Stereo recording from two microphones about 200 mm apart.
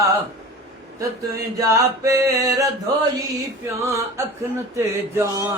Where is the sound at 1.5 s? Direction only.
15° right (ahead or behind).